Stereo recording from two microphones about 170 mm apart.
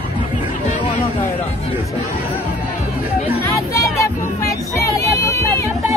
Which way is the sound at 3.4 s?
15° left (ahead or behind).